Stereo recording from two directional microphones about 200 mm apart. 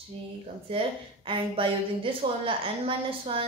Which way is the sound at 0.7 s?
25° right (ahead or behind).